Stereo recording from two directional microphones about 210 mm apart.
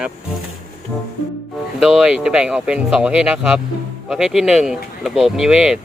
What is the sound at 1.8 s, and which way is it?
Speech, centre (ahead or behind).